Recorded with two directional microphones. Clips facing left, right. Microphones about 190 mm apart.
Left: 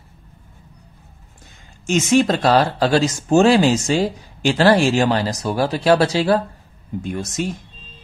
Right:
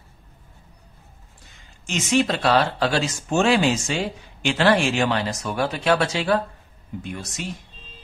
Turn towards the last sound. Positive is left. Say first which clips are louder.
# left 8 dB
turn(degrees=45)  # may be behind; listen again after turning